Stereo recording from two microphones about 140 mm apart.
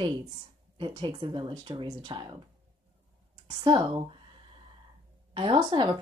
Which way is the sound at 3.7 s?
35° right (ahead or behind).